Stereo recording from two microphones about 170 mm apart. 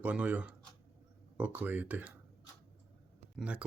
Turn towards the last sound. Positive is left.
turn(degrees=-5)  # may be behind; listen again after turning